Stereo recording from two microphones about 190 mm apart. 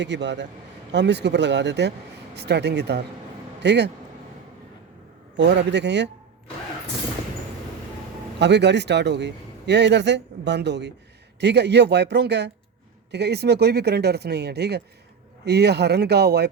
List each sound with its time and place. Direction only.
0.0 s a man's voice: 65° right (ahead or behind)
5.4 s a man's voice: 65° right (ahead or behind)
8.4 s a man's voice: 65° right (ahead or behind)